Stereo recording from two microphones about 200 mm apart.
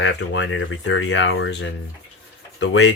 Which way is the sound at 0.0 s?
65° left (ahead or behind).